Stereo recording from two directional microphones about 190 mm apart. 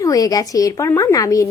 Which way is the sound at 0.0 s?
20° left (ahead or behind).